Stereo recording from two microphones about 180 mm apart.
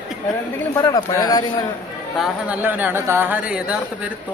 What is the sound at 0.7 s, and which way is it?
Speech, 20° left (ahead or behind).